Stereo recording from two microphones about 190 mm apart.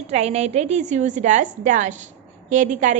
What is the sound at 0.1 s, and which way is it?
A woman's voice, 35° right (ahead or behind).